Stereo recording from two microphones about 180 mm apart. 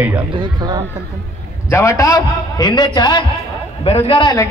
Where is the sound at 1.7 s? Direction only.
15° left (ahead or behind).